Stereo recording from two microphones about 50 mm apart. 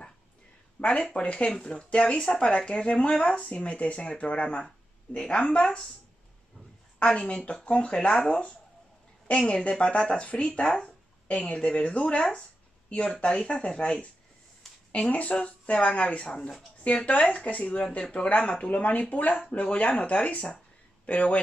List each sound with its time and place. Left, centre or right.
0.8 s speech: left
7.1 s speech: centre
16.3 s speech: centre
16.8 s speech: left